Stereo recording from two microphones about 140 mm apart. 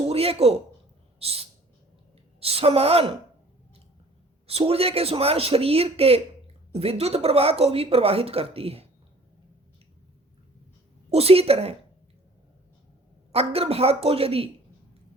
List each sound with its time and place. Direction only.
0.1 s a sound: 45° right (ahead or behind)
1.2 s a woman's voice: 45° right (ahead or behind)
4.4 s a woman's voice: 45° right (ahead or behind)
11.1 s a woman's voice: 45° right (ahead or behind)
13.3 s a woman's voice: 45° right (ahead or behind)